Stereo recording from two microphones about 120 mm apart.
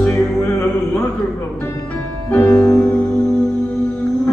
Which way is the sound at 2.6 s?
10° left (ahead or behind).